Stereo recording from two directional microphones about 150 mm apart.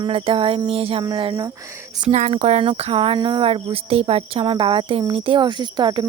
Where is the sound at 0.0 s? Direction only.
35° right (ahead or behind).